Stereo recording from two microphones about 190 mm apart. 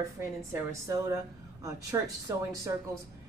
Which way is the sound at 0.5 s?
15° right (ahead or behind).